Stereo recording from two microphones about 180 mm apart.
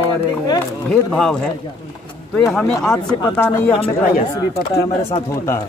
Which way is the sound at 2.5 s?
5° left (ahead or behind).